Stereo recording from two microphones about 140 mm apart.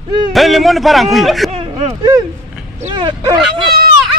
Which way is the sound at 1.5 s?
45° right (ahead or behind).